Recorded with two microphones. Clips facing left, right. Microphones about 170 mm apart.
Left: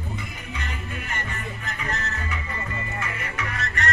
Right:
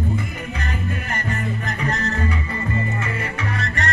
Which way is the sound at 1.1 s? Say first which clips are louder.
Right 7 dB; 40° right (ahead or behind).